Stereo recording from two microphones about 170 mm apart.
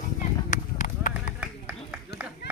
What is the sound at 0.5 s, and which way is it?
Run, 50° left (ahead or behind).